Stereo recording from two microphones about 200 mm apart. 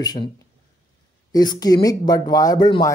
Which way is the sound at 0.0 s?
20° left (ahead or behind).